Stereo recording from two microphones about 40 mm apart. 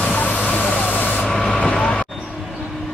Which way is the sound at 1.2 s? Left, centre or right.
Centre.